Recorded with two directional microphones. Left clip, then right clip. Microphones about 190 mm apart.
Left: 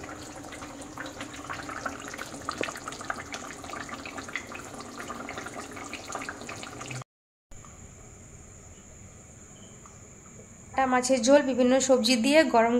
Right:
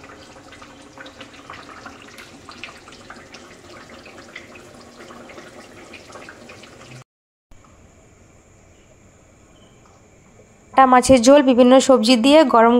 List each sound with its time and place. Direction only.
10.7 s speech: 40° right (ahead or behind)